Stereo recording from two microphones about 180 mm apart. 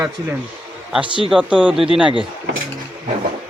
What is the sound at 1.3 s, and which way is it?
Speech, 5° right (ahead or behind).